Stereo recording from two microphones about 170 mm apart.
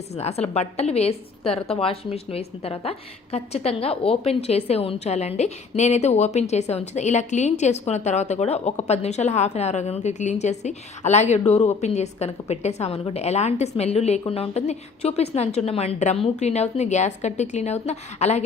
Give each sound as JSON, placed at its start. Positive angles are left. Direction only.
{"t": 0.1, "sound": "a woman's voice", "side_deg": 40}